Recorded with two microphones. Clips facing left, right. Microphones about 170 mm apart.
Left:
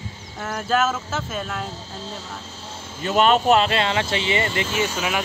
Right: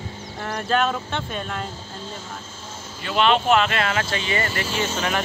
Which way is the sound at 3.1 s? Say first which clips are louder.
Left 2 dB; 45° left (ahead or behind).